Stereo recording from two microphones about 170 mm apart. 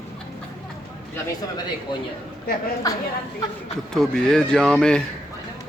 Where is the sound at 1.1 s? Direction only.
25° left (ahead or behind).